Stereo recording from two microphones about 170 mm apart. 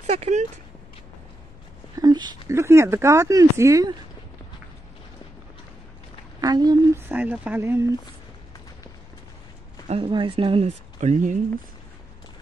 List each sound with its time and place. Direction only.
0.0 s speech: 40° right (ahead or behind)
2.0 s speech: 25° right (ahead or behind)
6.4 s a woman's voice: 25° right (ahead or behind)
7.0 s speech: 10° right (ahead or behind)
9.8 s speech: 30° right (ahead or behind)
11.0 s speech: 45° right (ahead or behind)